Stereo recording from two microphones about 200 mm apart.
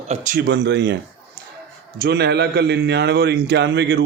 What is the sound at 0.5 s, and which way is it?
Speech, 60° right (ahead or behind).